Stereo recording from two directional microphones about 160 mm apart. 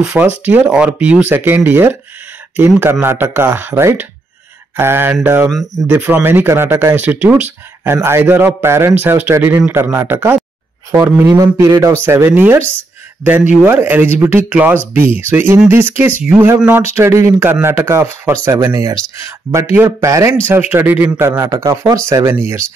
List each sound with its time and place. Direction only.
0.0 s speech: 5° right (ahead or behind)